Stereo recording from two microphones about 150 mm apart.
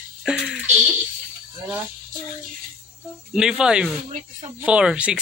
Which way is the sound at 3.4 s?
5° right (ahead or behind).